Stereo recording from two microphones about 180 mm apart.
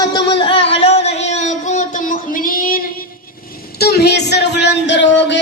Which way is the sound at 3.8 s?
65° left (ahead or behind).